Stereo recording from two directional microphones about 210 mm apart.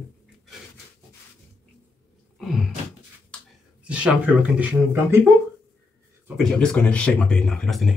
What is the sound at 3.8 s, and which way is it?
Speech, 5° right (ahead or behind).